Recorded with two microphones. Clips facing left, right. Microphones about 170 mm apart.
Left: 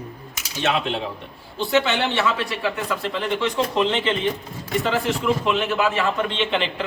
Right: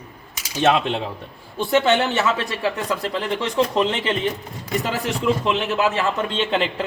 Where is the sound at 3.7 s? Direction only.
40° right (ahead or behind).